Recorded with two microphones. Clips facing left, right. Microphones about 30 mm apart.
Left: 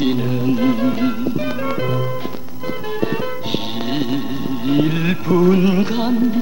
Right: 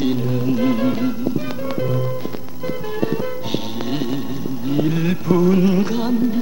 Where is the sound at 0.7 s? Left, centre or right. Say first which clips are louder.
Left 1 dB; centre.